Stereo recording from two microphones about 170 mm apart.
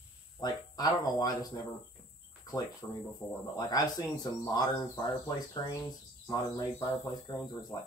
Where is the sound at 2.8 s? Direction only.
20° left (ahead or behind).